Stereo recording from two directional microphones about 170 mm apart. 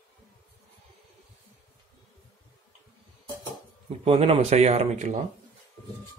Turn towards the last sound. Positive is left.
turn(degrees=-40)  # may be behind; listen again after turning